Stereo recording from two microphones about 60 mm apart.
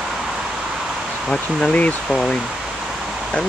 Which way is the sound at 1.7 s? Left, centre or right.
Centre.